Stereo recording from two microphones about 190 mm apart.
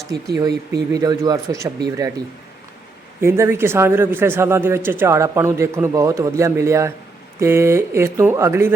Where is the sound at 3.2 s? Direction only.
15° right (ahead or behind).